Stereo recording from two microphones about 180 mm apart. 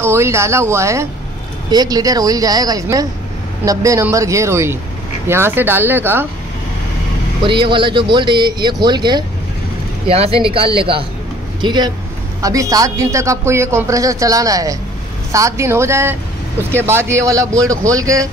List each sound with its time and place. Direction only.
0.0 s a man's voice: 15° right (ahead or behind)
7.4 s a man's voice: 25° right (ahead or behind)